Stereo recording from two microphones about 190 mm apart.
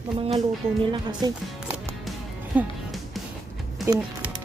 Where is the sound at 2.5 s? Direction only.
5° right (ahead or behind).